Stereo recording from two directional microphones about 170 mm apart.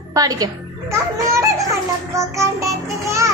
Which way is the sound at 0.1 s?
20° right (ahead or behind).